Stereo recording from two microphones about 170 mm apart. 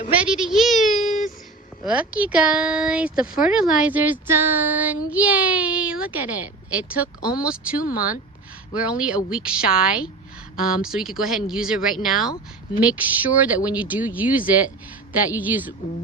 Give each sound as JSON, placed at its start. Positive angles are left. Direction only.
{"t": 0.1, "sound": "a woman's voice", "side_deg": -5}
{"t": 7.9, "sound": "speech", "side_deg": 55}
{"t": 8.8, "sound": "a woman's voice", "side_deg": -5}